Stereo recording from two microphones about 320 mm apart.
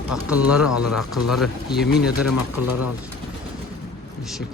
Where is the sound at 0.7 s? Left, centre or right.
Left.